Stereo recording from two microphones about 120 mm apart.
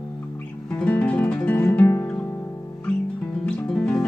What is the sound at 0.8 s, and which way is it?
Music, 10° left (ahead or behind).